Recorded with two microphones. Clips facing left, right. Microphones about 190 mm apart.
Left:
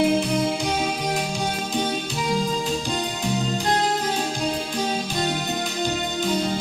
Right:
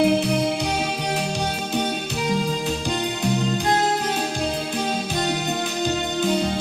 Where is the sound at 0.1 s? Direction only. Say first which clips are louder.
Right 1 dB; 65° right (ahead or behind).